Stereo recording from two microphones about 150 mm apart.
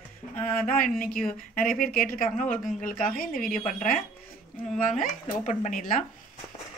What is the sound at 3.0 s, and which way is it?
A woman's voice, 70° left (ahead or behind).